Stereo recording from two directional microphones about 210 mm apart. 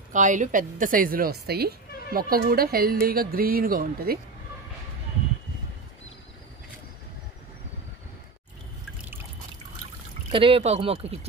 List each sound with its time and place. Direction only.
0.1 s speech: 35° right (ahead or behind)
10.3 s speech: 25° right (ahead or behind)